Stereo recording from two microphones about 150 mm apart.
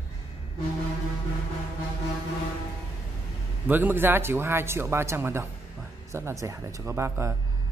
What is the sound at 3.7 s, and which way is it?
Speech, 15° right (ahead or behind).